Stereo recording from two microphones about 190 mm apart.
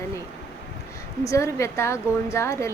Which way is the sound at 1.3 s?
15° left (ahead or behind).